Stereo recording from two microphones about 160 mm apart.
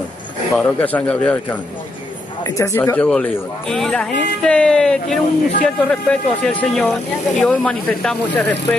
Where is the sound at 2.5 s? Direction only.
20° left (ahead or behind).